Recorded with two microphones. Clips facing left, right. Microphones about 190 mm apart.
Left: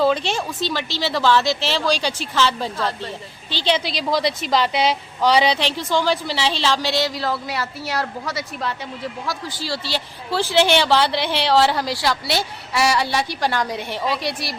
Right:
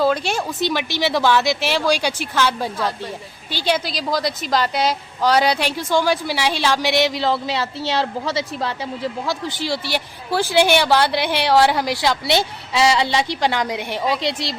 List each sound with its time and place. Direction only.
0.0 s a woman's voice: 10° right (ahead or behind)